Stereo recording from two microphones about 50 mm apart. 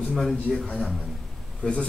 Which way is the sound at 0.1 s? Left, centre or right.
Centre.